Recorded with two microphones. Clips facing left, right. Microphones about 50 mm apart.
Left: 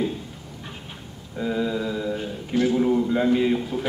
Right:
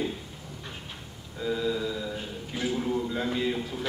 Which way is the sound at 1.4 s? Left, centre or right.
Left.